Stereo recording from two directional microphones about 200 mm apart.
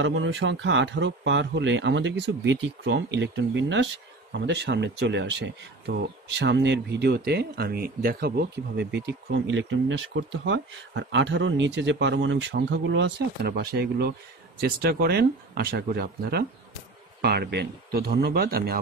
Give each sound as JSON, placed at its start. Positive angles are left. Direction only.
{"t": 0.0, "sound": "speech", "side_deg": -70}